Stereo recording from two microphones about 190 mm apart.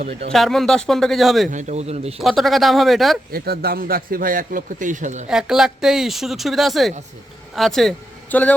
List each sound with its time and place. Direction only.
0.3 s speech: centre (ahead or behind)
1.5 s a man's voice: 40° right (ahead or behind)
2.2 s speech: centre (ahead or behind)
3.3 s a man's voice: 55° right (ahead or behind); by 5.2 s 40° right (ahead or behind)
5.3 s speech: 5° right (ahead or behind)